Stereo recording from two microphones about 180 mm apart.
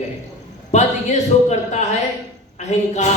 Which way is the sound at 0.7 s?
40° left (ahead or behind).